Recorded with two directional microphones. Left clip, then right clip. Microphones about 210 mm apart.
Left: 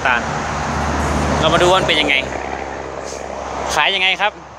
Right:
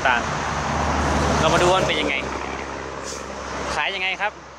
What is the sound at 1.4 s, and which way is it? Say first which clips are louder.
Speech: left 5 dB; 10° left (ahead or behind).